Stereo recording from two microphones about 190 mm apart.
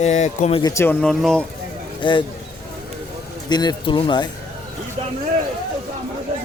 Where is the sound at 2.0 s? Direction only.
25° left (ahead or behind).